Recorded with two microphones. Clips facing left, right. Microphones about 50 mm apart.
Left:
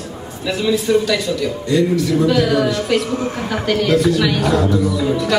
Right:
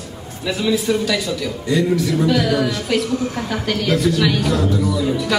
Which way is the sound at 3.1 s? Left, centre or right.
Left.